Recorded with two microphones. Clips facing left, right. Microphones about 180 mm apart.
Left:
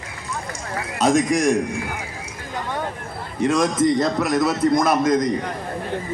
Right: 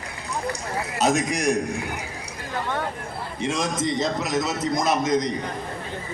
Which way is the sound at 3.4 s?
50° left (ahead or behind).